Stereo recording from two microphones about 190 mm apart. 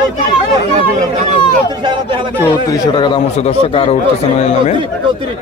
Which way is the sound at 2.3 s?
15° left (ahead or behind).